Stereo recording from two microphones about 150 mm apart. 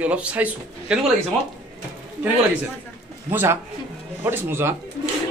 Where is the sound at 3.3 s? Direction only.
15° right (ahead or behind).